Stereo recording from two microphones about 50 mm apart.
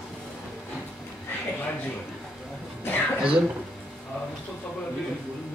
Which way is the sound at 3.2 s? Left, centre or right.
Centre.